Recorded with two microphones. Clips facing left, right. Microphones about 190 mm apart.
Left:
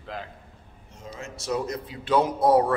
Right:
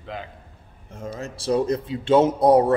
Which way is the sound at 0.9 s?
55° right (ahead or behind).